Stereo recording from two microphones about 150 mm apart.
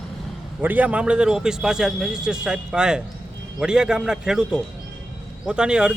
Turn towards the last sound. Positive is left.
turn(degrees=-5)  # may be behind; listen again after turning